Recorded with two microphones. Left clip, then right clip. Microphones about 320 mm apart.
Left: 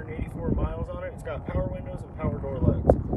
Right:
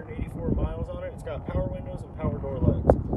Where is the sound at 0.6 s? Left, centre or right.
Centre.